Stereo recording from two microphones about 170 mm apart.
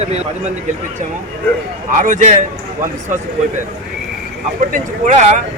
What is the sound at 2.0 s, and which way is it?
Speech, 50° right (ahead or behind).